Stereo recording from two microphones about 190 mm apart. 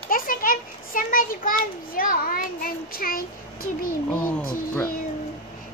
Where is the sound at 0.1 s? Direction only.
45° left (ahead or behind).